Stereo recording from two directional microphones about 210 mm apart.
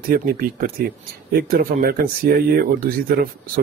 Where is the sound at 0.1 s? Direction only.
45° right (ahead or behind).